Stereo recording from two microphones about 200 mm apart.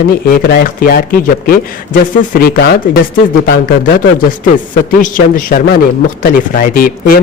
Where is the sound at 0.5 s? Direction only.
50° left (ahead or behind).